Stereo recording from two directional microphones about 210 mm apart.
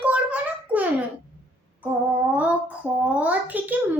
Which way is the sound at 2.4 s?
5° right (ahead or behind).